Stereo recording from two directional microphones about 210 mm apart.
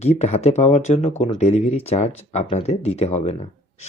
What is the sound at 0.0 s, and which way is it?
Speech, 30° left (ahead or behind).